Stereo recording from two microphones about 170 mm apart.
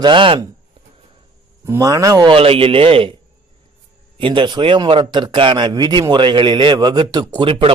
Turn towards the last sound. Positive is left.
turn(degrees=-30)  # may be behind; listen again after turning